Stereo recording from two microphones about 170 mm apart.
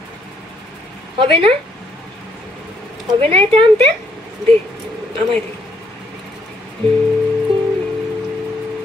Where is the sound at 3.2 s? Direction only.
35° right (ahead or behind).